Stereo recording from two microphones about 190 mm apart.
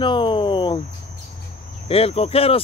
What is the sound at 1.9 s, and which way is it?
Speech, 30° left (ahead or behind).